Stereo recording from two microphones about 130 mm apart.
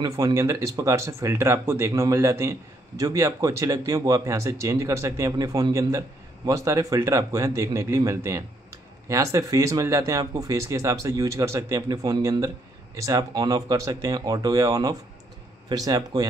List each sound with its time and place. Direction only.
0.0 s speech: 25° right (ahead or behind)